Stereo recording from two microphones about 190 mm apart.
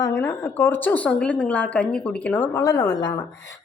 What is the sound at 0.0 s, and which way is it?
A woman's voice, 15° left (ahead or behind).